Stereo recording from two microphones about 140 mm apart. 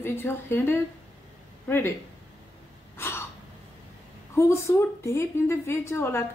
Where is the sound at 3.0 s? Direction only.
20° left (ahead or behind).